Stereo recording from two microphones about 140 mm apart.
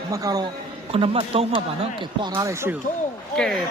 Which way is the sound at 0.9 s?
40° right (ahead or behind).